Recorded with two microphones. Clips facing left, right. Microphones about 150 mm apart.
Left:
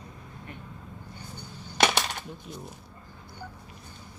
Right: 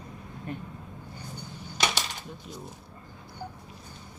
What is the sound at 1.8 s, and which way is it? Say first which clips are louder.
Coin: left 5 dB; 60° left (ahead or behind).